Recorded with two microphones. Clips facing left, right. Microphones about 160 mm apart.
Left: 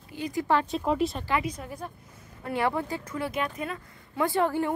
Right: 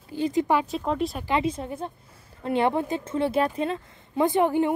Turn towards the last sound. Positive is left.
turn(degrees=-20)  # may be behind; listen again after turning